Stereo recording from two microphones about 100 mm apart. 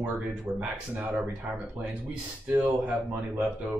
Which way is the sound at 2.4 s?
15° right (ahead or behind).